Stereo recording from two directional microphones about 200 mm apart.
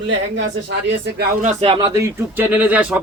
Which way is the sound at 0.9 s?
60° right (ahead or behind).